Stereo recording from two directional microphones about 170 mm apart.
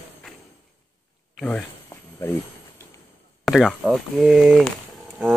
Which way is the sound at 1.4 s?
10° left (ahead or behind).